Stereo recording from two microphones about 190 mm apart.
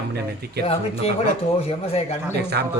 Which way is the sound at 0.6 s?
30° left (ahead or behind).